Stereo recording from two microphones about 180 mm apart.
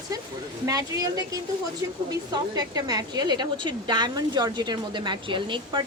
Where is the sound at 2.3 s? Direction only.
20° right (ahead or behind).